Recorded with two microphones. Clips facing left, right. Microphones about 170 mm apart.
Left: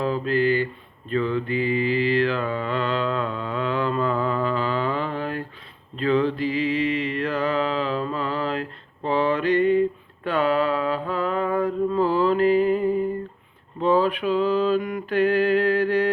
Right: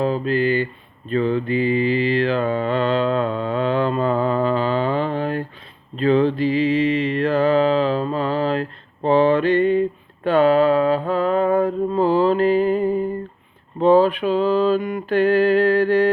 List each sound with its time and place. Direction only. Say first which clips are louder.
0.0 s mantra: right 2 dB; 20° right (ahead or behind)
10.2 s music: right 7 dB; 30° right (ahead or behind)
11.1 s mantra: right 6 dB; 30° right (ahead or behind)
13.7 s a sound: right 6 dB; 30° right (ahead or behind)